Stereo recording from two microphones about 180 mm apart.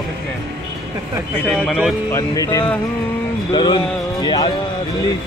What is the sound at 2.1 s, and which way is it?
Speech, 20° left (ahead or behind).